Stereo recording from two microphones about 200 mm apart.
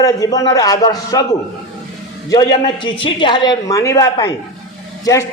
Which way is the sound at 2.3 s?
20° left (ahead or behind).